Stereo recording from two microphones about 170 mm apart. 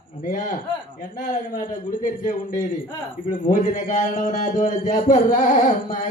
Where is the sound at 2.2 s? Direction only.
50° left (ahead or behind).